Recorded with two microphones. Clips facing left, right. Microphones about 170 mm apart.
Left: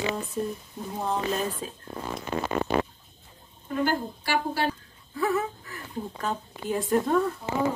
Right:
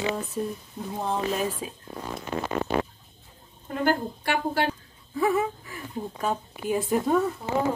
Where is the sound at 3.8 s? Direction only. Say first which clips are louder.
Right 7 dB; 55° right (ahead or behind).